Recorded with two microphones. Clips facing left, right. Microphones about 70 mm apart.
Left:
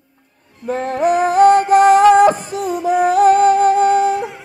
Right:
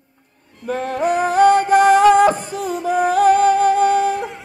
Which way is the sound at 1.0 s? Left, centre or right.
Centre.